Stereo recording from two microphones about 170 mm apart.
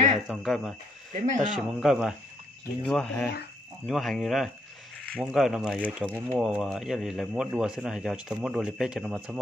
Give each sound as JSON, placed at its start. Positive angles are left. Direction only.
{"t": 0.3, "sound": "speech", "side_deg": 0}
{"t": 1.1, "sound": "speech", "side_deg": -45}
{"t": 1.5, "sound": "speech", "side_deg": 0}